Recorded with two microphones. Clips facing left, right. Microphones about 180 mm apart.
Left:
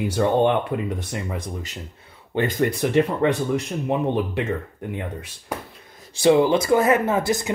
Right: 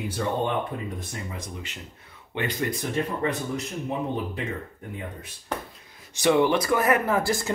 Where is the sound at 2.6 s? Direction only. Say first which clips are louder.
Left 9 dB; 70° left (ahead or behind).